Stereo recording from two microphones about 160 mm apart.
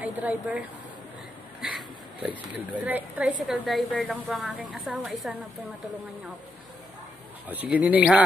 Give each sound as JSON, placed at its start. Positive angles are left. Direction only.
{"t": 0.0, "sound": "a woman's voice", "side_deg": -10}
{"t": 7.7, "sound": "speech", "side_deg": -10}